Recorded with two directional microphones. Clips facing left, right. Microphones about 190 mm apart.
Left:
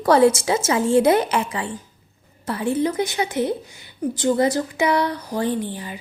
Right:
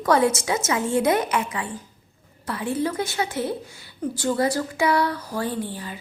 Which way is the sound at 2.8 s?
15° left (ahead or behind).